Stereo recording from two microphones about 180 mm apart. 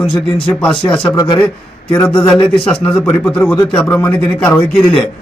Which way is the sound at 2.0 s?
5° left (ahead or behind).